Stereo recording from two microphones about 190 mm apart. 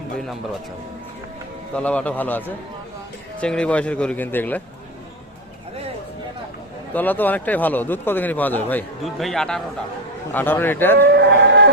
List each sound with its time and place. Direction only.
1.7 s a man's voice: 5° left (ahead or behind)
3.4 s a man's voice: 5° left (ahead or behind)
6.9 s a man's voice: 10° left (ahead or behind)
10.9 s a sound: 60° right (ahead or behind)